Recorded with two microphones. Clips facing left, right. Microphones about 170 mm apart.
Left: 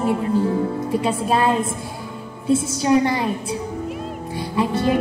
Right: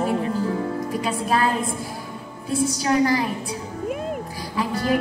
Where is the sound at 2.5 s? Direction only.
25° left (ahead or behind).